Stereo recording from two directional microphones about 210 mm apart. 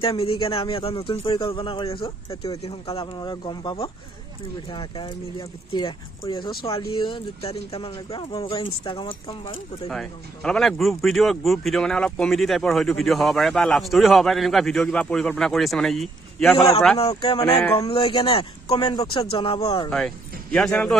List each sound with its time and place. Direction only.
0.0 s speech: 25° left (ahead or behind)
9.8 s speech: 5° left (ahead or behind)
16.5 s speech: 20° left (ahead or behind)
20.5 s speech: 5° left (ahead or behind)